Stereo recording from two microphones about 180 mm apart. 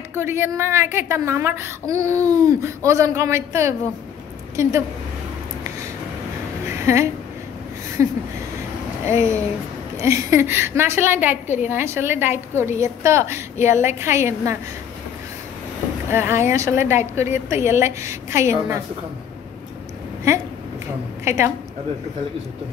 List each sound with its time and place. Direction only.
0.1 s a woman's voice: 15° right (ahead or behind)
6.8 s a woman's voice: 15° right (ahead or behind)
16.1 s a woman's voice: 15° right (ahead or behind)
21.2 s a woman's voice: 15° right (ahead or behind)